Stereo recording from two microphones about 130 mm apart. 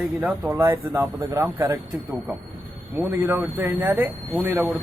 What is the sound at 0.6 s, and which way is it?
Speech, 20° right (ahead or behind).